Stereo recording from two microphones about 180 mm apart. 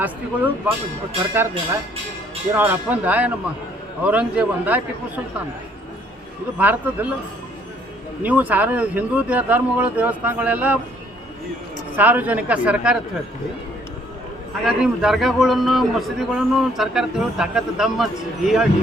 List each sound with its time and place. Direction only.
0.0 s speech: 10° right (ahead or behind)
2.6 s speech: 10° right (ahead or behind)
6.6 s speech: 10° right (ahead or behind)
8.2 s speech: 10° right (ahead or behind)
11.9 s speech: 10° right (ahead or behind)
14.6 s a man's voice: 5° right (ahead or behind)